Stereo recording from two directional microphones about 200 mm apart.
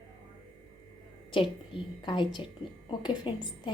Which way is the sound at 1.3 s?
25° left (ahead or behind).